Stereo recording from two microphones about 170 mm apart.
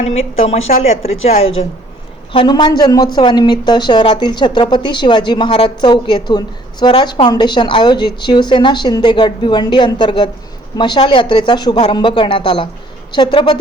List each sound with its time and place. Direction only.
0.0 s speech: 40° left (ahead or behind)